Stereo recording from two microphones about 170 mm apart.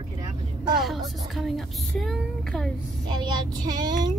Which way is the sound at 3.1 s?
25° right (ahead or behind).